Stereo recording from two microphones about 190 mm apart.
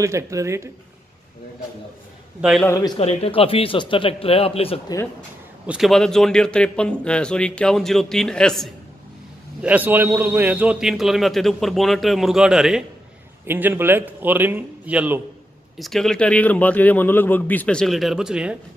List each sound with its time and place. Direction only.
0.0 s a man's voice: 15° right (ahead or behind)
2.6 s a man's voice: 15° left (ahead or behind)
3.0 s speech: 30° left (ahead or behind)
5.7 s a man's voice: centre (ahead or behind)
9.6 s a man's voice: 10° right (ahead or behind)
15.8 s a man's voice: centre (ahead or behind)